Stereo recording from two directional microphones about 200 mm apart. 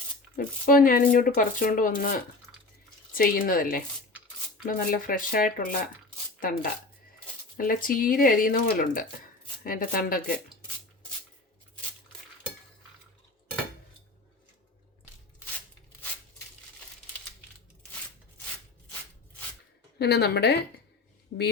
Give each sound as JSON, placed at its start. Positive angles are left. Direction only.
{"t": 0.3, "sound": "rub", "side_deg": 45}
{"t": 6.4, "sound": "speech", "side_deg": 45}
{"t": 7.5, "sound": "rub", "side_deg": 45}
{"t": 20.0, "sound": "rub", "side_deg": 55}